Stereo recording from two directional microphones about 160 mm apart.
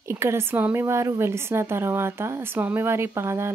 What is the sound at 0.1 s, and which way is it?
Speech, 15° right (ahead or behind).